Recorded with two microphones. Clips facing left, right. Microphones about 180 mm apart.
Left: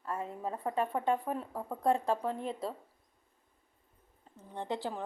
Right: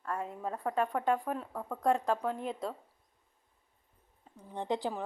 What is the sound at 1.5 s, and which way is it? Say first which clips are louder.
Speech: even; 15° left (ahead or behind).